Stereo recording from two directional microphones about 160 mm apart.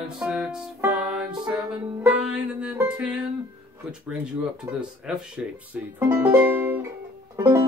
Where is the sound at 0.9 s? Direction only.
5° right (ahead or behind).